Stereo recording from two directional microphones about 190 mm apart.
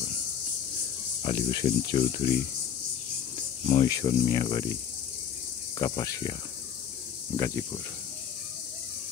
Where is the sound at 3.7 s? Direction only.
25° left (ahead or behind).